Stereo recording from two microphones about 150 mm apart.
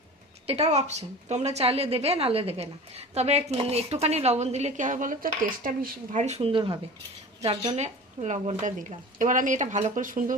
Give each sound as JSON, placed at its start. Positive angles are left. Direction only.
{"t": 0.4, "sound": "a woman's voice", "side_deg": -45}
{"t": 7.7, "sound": "a woman's voice", "side_deg": -50}